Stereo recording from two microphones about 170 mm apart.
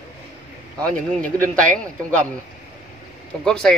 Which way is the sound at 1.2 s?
50° right (ahead or behind).